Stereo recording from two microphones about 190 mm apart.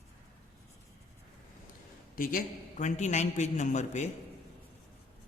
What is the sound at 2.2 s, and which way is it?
A man's voice, 50° left (ahead or behind).